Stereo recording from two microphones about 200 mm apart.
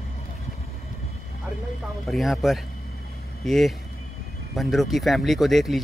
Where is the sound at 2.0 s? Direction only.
Centre (ahead or behind).